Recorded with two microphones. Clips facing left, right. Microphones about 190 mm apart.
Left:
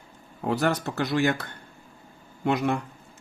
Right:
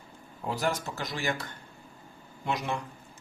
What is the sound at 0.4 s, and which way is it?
Speech, 65° left (ahead or behind).